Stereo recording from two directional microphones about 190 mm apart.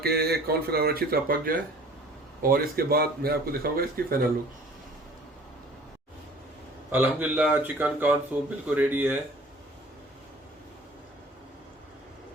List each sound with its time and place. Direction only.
0.0 s speech: 55° right (ahead or behind)
6.9 s speech: 10° right (ahead or behind)